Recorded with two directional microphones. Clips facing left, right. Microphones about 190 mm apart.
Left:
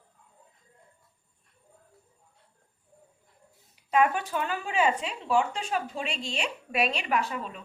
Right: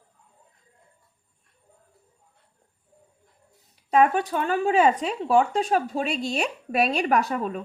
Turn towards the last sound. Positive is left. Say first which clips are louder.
# right 6 dB
turn(degrees=-45)  # may be behind; listen again after turning